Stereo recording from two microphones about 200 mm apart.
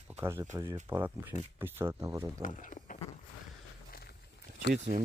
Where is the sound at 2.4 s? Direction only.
40° left (ahead or behind).